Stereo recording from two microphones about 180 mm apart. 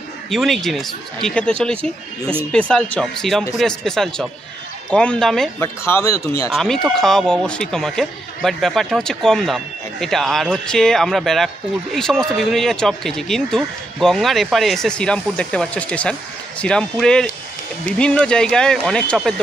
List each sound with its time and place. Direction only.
0.3 s speech: centre (ahead or behind)
5.6 s speech: 15° left (ahead or behind)
6.5 s speech: 5° left (ahead or behind)